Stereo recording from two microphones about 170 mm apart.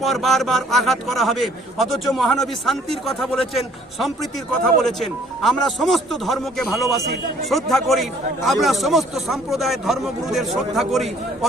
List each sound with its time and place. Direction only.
0.0 s a man's voice: centre (ahead or behind)